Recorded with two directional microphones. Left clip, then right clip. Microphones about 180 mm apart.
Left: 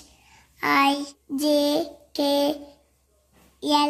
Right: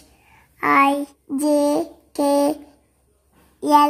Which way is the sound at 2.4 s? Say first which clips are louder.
Right 4 dB; 20° right (ahead or behind).